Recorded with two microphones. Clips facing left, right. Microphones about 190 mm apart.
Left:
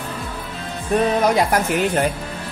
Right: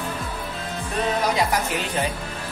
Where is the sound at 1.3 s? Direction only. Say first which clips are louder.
Left 5 dB; 50° left (ahead or behind).